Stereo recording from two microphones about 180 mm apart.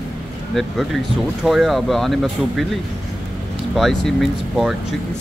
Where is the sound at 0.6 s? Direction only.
Centre (ahead or behind).